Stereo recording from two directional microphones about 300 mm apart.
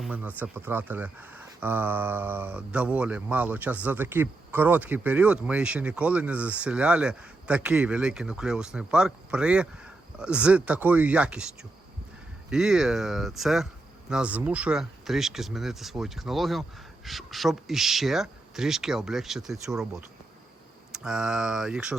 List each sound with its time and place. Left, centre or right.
0.0 s speech: centre